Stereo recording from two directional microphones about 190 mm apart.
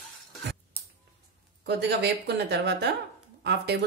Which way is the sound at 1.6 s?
60° right (ahead or behind).